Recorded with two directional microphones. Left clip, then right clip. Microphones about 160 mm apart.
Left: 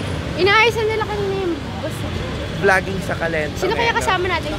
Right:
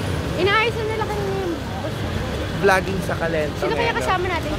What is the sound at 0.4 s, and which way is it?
Speech, 70° left (ahead or behind).